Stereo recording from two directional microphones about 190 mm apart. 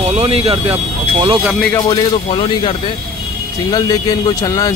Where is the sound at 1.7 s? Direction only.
25° left (ahead or behind).